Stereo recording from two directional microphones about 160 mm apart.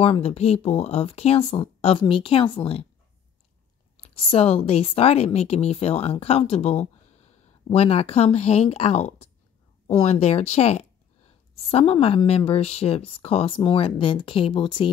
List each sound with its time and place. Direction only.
0.0 s speech: 40° left (ahead or behind)
4.0 s speech: 35° left (ahead or behind)